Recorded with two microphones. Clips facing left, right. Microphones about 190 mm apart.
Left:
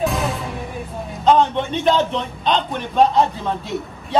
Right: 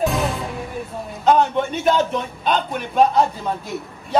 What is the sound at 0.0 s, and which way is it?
Music, centre (ahead or behind).